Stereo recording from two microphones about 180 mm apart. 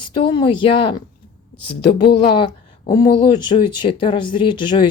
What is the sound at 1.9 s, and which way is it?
Speech, 65° left (ahead or behind).